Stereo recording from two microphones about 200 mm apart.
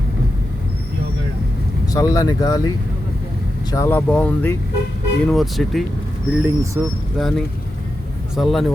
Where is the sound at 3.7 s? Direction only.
15° left (ahead or behind); by 6.7 s 10° right (ahead or behind).